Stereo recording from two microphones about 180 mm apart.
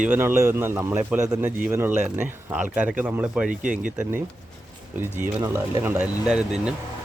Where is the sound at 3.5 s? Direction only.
45° right (ahead or behind).